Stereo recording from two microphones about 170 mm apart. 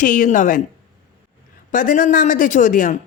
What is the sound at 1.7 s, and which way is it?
A woman's voice, 50° left (ahead or behind).